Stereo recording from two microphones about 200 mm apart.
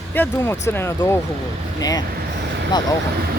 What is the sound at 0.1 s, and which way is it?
Speech, 10° left (ahead or behind).